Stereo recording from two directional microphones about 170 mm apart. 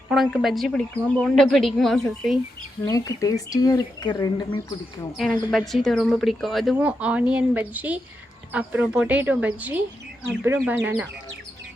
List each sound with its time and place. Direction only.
0.1 s speech: centre (ahead or behind)
2.8 s speech: 20° left (ahead or behind)
5.1 s speech: centre (ahead or behind)